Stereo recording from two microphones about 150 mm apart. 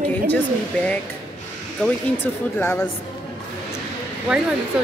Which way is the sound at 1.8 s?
10° left (ahead or behind).